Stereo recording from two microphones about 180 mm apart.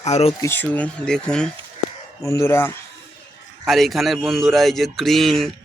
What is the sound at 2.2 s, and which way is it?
Speech, 15° left (ahead or behind).